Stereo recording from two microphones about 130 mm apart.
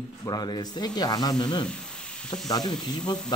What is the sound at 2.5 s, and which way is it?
Speech, 30° left (ahead or behind).